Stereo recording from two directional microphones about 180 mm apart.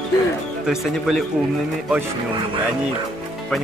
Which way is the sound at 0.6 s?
Centre (ahead or behind).